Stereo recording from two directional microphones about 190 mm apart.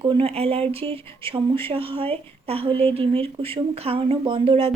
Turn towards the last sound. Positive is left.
turn(degrees=-30)  # may be behind; listen again after turning